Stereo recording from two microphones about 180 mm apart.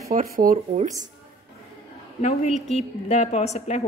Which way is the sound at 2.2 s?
40° left (ahead or behind).